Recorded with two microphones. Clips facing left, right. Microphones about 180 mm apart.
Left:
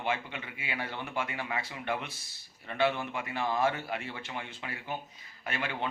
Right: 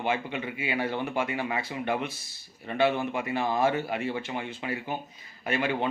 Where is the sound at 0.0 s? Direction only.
15° right (ahead or behind).